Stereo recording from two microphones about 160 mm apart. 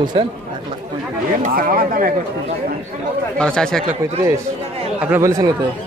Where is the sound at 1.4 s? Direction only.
60° right (ahead or behind).